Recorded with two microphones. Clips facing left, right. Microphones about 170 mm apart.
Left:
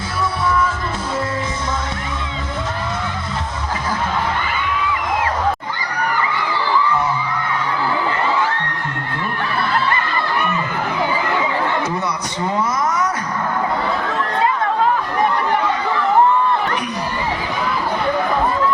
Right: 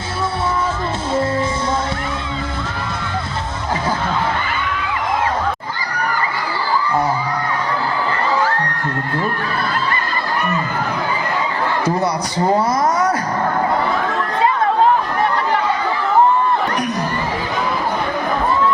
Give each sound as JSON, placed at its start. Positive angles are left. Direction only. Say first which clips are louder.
{"t": 6.5, "sound": "crowd", "louder": "even", "side_deg": -40}
{"t": 12.0, "sound": "speech", "louder": "right 5 dB", "side_deg": -35}